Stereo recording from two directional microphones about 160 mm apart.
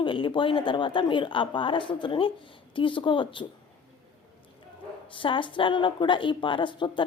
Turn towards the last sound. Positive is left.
turn(degrees=30)  # may be behind; listen again after turning